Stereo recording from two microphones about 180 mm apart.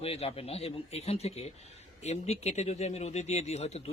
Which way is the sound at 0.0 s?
35° left (ahead or behind).